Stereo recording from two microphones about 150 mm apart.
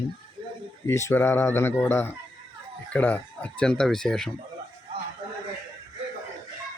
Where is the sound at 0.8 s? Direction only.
20° left (ahead or behind).